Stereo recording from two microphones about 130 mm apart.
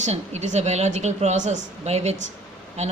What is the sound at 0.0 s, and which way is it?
Speech, 65° right (ahead or behind).